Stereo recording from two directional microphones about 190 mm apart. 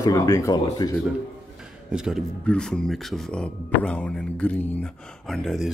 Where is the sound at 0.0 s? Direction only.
20° left (ahead or behind).